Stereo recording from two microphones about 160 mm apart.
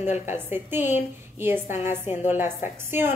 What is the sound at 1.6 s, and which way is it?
Speech, 50° left (ahead or behind).